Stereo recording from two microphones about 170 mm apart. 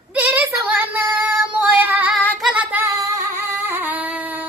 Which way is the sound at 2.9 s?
15° right (ahead or behind).